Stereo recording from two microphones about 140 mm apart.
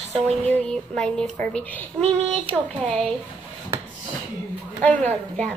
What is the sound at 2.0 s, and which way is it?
Speech, 45° right (ahead or behind).